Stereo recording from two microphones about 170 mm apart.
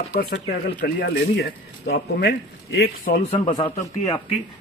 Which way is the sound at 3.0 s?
50° left (ahead or behind).